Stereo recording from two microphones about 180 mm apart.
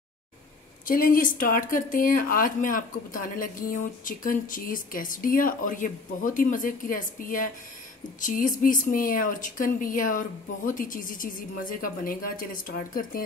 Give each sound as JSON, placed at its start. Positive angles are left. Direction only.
{"t": 0.8, "sound": "speech", "side_deg": 50}